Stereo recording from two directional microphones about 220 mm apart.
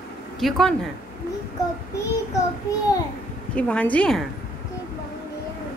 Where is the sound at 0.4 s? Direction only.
Centre (ahead or behind).